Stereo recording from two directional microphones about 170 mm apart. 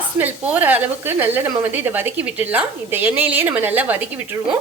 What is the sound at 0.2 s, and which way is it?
A woman's voice, 10° right (ahead or behind).